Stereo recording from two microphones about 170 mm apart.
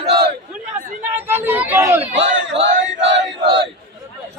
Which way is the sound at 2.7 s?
90° right.